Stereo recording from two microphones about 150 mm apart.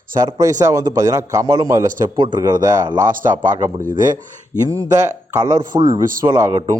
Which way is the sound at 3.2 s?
60° right (ahead or behind).